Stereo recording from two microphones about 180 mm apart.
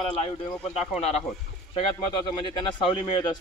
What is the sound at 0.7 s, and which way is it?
Speech, 35° left (ahead or behind).